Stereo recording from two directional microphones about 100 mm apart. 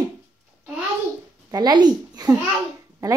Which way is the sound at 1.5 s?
45° right (ahead or behind).